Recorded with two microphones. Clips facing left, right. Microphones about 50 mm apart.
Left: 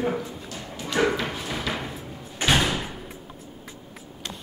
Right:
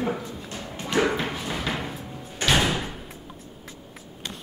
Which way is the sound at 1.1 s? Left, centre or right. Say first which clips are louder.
Even; right.